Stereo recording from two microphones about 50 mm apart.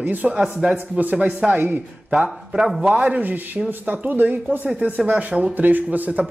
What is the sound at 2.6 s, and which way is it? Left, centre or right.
Speech, centre.